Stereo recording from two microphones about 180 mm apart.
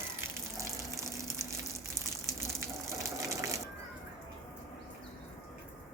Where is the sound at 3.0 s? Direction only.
15° right (ahead or behind).